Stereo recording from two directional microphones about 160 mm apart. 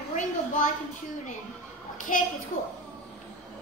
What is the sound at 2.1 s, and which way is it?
Speech, 55° left (ahead or behind).